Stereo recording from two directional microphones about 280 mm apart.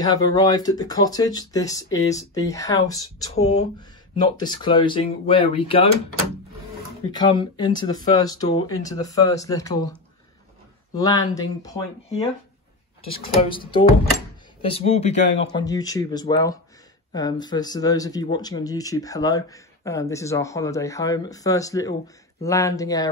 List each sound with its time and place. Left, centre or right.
0.0 s speech: centre
3.3 s speech: left
7.1 s speech: centre
11.0 s speech: centre
13.7 s speech: centre
15.5 s speech: centre